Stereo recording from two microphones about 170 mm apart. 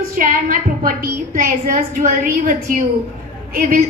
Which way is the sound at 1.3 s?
50° right (ahead or behind).